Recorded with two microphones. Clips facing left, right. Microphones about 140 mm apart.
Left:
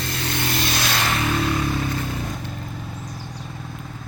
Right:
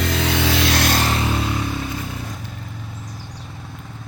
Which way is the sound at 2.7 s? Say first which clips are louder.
Left 2 dB; 15° left (ahead or behind).